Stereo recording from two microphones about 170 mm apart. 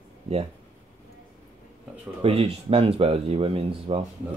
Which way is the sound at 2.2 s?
35° right (ahead or behind).